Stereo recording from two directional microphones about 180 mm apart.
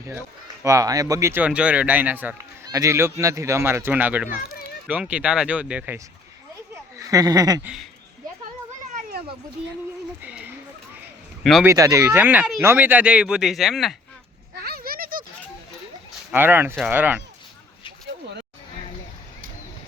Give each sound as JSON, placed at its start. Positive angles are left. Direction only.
{"t": 0.0, "sound": "speech", "side_deg": -15}
{"t": 6.9, "sound": "speech", "side_deg": -20}
{"t": 7.6, "sound": "speech", "side_deg": -5}
{"t": 9.0, "sound": "children playing", "side_deg": -60}
{"t": 10.2, "sound": "speech", "side_deg": -10}
{"t": 11.6, "sound": "speech", "side_deg": -15}
{"t": 14.5, "sound": "a sound", "side_deg": -60}
{"t": 16.3, "sound": "speech", "side_deg": -10}